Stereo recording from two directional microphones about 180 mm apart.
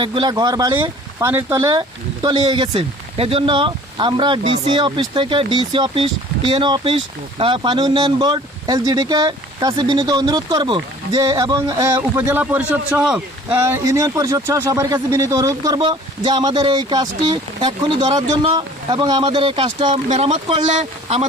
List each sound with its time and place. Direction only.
0.0 s a man's voice: 25° right (ahead or behind)